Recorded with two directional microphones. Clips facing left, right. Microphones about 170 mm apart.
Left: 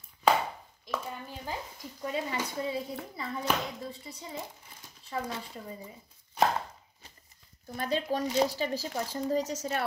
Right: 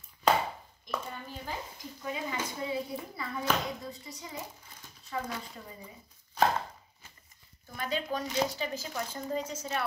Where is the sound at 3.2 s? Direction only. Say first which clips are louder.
Even; 25° left (ahead or behind).